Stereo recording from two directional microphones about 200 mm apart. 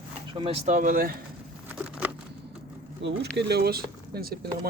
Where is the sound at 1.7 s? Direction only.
10° right (ahead or behind).